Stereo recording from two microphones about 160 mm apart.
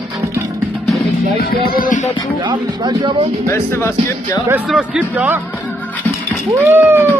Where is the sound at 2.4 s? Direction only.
30° right (ahead or behind).